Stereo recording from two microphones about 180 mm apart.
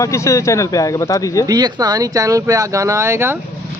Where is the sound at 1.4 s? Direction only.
20° right (ahead or behind).